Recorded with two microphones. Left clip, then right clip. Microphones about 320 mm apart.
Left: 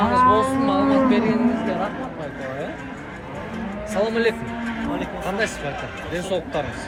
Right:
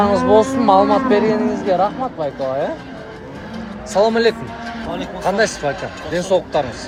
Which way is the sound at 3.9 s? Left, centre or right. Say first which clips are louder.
Right 7 dB; centre.